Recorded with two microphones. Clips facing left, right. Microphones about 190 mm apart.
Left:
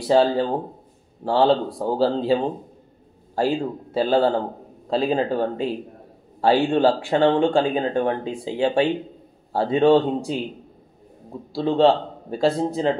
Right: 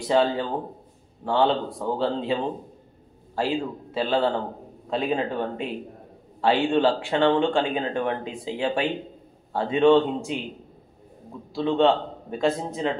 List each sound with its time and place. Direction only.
0.0 s speech: 35° left (ahead or behind)
3.3 s speech: 40° left (ahead or behind)
11.5 s speech: 35° left (ahead or behind)